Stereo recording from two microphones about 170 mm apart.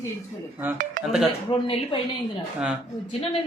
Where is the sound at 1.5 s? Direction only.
30° left (ahead or behind).